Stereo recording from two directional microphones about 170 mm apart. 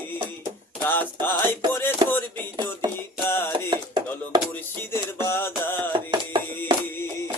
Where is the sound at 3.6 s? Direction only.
25° right (ahead or behind).